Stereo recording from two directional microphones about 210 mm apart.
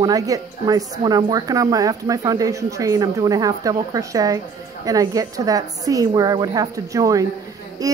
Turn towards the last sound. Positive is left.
turn(degrees=-15)  # may be behind; listen again after turning